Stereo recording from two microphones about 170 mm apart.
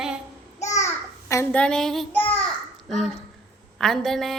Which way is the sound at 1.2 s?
15° left (ahead or behind).